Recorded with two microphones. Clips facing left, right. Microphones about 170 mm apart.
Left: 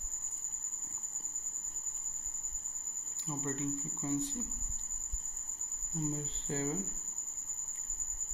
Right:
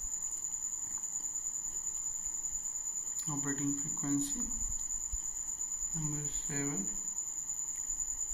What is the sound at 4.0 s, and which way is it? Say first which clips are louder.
Speech: right 1 dB; 15° left (ahead or behind).